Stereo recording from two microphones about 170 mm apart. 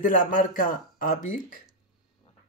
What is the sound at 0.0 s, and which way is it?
Speech, 50° left (ahead or behind).